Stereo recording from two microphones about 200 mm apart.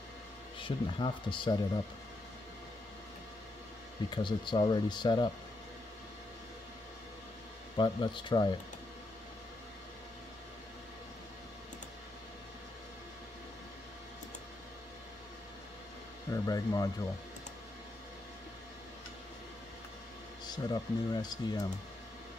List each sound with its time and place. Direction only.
0.6 s speech: 25° left (ahead or behind)
4.1 s speech: 25° left (ahead or behind)
7.7 s speech: 20° left (ahead or behind)
16.3 s speech: 15° left (ahead or behind)
20.4 s speech: 20° left (ahead or behind)